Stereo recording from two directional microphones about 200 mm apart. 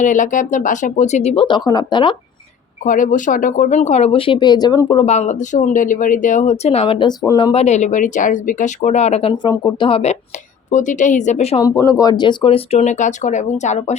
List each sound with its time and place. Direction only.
0.0 s speech: 40° left (ahead or behind); by 2.1 s 25° left (ahead or behind)
2.8 s speech: 40° left (ahead or behind); by 7.5 s 20° left (ahead or behind)
7.5 s speech: 35° left (ahead or behind)
9.4 s speech: 20° left (ahead or behind)
11.6 s speech: 15° left (ahead or behind); by 13.9 s 35° left (ahead or behind)